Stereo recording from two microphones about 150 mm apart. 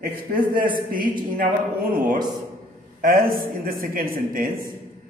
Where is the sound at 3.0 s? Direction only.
70° right (ahead or behind).